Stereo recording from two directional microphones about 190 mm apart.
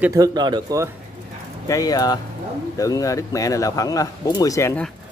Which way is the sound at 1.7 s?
20° left (ahead or behind).